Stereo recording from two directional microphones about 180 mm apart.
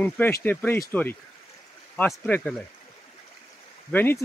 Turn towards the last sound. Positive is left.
turn(degrees=10)  # may be behind; listen again after turning